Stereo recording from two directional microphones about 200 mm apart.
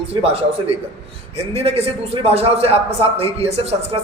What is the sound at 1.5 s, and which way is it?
Speech, 30° right (ahead or behind).